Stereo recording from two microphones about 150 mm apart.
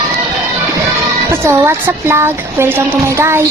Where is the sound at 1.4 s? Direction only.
15° right (ahead or behind).